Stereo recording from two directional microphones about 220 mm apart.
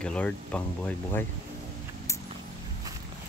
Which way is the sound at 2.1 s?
15° left (ahead or behind).